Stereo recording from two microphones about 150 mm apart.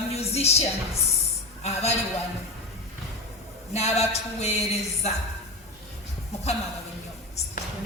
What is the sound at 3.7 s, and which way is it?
Speech, 45° left (ahead or behind).